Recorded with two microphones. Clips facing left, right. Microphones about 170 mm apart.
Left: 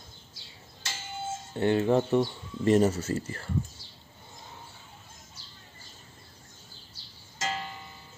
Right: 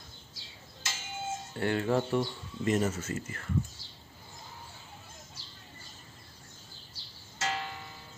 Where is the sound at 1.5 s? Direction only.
20° left (ahead or behind).